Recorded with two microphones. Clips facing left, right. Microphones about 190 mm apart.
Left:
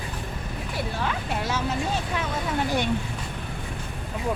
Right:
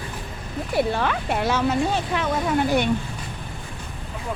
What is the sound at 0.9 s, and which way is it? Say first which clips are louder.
Speech: right 5 dB; 65° right (ahead or behind).